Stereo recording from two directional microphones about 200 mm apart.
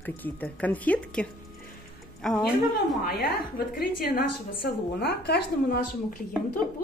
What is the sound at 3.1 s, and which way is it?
A woman's voice, 50° left (ahead or behind).